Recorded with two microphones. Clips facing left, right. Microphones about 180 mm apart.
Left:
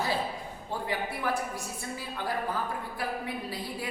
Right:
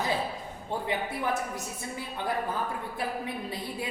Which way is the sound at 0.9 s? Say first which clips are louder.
Right 1 dB; 20° right (ahead or behind).